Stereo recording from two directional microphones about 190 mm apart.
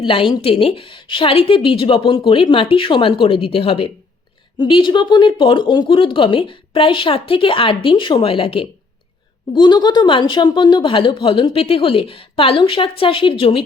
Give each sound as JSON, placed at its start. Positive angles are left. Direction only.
{"t": 0.0, "sound": "speech", "side_deg": 25}